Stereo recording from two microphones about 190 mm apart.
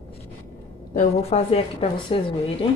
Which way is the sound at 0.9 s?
35° left (ahead or behind).